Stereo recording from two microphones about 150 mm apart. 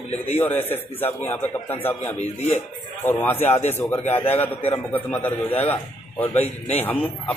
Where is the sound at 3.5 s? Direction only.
45° left (ahead or behind).